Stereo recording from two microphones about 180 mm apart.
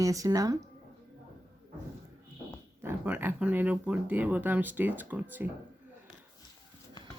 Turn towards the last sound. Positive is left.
turn(degrees=-10)  # may be behind; listen again after turning